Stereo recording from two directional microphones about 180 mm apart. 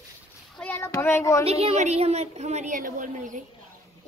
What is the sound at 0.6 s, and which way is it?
Child singing, 10° left (ahead or behind).